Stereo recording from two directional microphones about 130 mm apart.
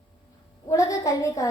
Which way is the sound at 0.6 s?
25° left (ahead or behind).